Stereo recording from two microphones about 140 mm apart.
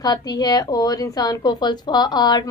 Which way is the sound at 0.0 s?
30° left (ahead or behind).